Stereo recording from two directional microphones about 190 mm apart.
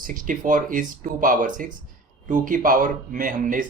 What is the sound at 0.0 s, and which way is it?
A man's voice, 45° right (ahead or behind).